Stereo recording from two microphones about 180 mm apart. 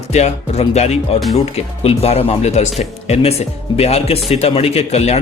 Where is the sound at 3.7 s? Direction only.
35° left (ahead or behind).